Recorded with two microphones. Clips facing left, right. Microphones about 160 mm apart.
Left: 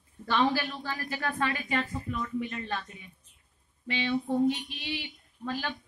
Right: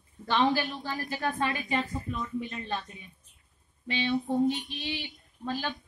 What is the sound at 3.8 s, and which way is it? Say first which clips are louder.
Speech: right 1 dB; 25° right (ahead or behind).